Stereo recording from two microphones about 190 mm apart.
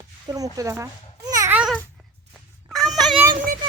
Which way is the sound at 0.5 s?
15° right (ahead or behind).